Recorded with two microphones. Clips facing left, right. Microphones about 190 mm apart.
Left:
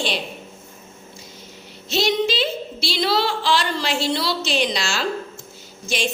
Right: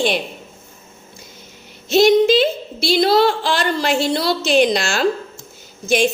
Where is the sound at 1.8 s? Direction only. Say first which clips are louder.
Right 9 dB; 50° right (ahead or behind).